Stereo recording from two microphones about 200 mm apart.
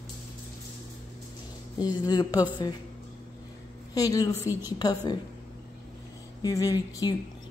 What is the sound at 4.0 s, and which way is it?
Speech, 20° left (ahead or behind).